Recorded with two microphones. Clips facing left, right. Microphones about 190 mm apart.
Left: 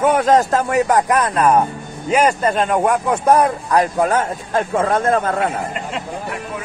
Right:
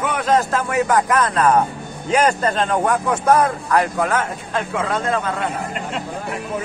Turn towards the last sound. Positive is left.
turn(degrees=50)  # may be behind; listen again after turning